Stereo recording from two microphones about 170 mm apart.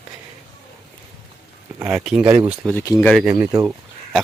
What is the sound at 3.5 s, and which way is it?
Speech, 15° right (ahead or behind).